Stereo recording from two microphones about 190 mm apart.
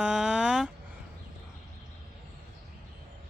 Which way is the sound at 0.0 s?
5° right (ahead or behind).